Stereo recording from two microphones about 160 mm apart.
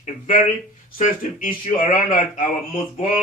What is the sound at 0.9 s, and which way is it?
Speech, 55° left (ahead or behind).